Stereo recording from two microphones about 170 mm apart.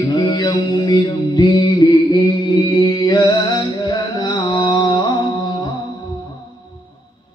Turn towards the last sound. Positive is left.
turn(degrees=25)  # may be behind; listen again after turning